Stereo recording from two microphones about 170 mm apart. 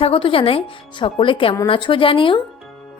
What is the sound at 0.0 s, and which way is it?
Speech, 30° left (ahead or behind).